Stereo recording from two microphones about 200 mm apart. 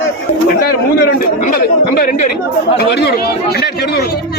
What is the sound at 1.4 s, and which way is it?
Speech, 45° left (ahead or behind).